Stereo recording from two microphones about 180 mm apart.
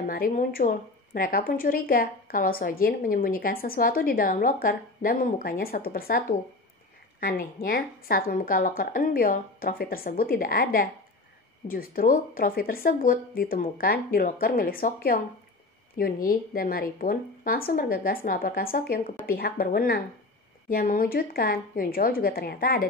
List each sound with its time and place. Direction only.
0.0 s a woman's voice: 55° left (ahead or behind)